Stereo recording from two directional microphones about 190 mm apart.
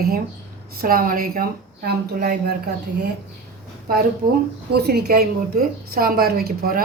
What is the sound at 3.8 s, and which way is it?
A woman's voice, 50° right (ahead or behind).